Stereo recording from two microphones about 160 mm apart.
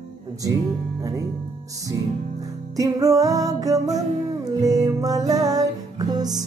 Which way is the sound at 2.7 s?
20° right (ahead or behind).